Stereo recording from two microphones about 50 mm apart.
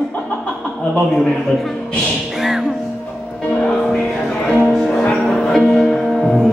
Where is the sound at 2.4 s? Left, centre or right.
Centre.